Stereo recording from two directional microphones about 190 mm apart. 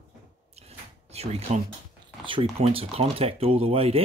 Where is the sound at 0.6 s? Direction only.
35° right (ahead or behind).